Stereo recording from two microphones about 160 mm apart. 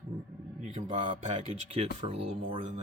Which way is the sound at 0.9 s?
45° right (ahead or behind).